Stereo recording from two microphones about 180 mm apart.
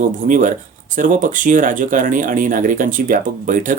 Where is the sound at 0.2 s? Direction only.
45° right (ahead or behind).